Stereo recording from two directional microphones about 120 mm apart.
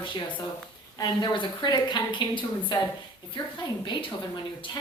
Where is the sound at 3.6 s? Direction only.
40° left (ahead or behind).